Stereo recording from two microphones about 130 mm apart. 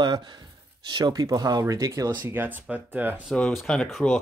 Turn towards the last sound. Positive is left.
turn(degrees=5)  # may be behind; listen again after turning